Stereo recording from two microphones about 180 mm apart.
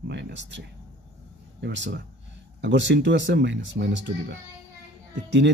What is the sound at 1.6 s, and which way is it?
Speech, 80° right.